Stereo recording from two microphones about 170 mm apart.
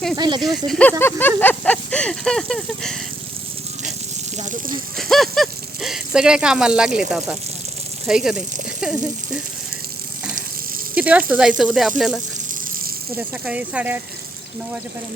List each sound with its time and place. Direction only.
0.2 s speech: 25° right (ahead or behind)
0.4 s speech: 5° left (ahead or behind)
4.4 s speech: 45° right (ahead or behind)
4.9 s speech: centre (ahead or behind)
8.0 s speech: 5° right (ahead or behind)
10.9 s speech: 10° right (ahead or behind)